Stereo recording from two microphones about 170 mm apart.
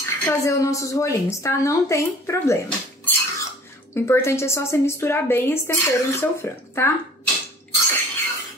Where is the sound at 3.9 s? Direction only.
15° left (ahead or behind).